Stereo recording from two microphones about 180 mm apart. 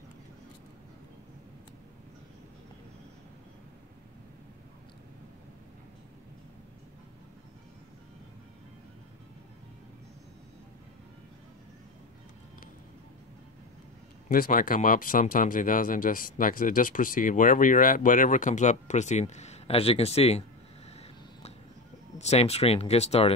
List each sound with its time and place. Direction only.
14.3 s speech: 50° left (ahead or behind); by 20.4 s 35° left (ahead or behind)
22.2 s speech: 35° left (ahead or behind)